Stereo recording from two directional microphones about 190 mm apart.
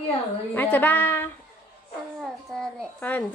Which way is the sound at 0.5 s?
10° left (ahead or behind).